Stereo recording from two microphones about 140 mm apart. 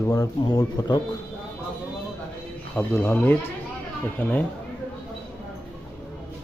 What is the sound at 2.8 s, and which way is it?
Speech, 15° left (ahead or behind).